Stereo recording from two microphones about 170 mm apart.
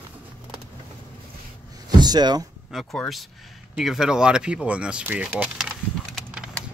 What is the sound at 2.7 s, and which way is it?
Speech, centre (ahead or behind).